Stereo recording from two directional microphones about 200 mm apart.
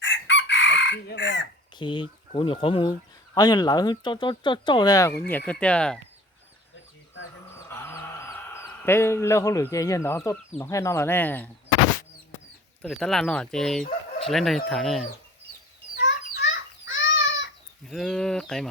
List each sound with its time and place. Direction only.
0.0 s chicken: 65° left (ahead or behind)
1.8 s speech: 25° left (ahead or behind); by 6.0 s 5° left (ahead or behind)
7.7 s speech: 10° left (ahead or behind)
12.8 s speech: 5° left (ahead or behind)
16.3 s chicken: 65° left (ahead or behind)
17.8 s speech: centre (ahead or behind)